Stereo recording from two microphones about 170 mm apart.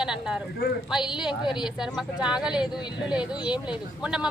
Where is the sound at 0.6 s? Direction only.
70° left (ahead or behind).